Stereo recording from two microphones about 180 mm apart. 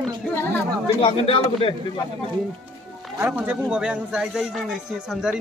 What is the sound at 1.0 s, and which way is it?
Speech, 30° left (ahead or behind).